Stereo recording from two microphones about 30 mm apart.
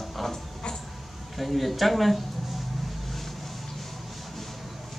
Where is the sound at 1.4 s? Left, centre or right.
Centre.